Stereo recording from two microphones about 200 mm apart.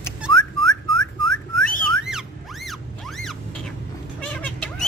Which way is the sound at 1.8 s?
Centre (ahead or behind).